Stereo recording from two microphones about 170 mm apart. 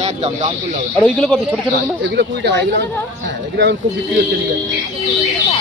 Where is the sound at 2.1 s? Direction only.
90° right.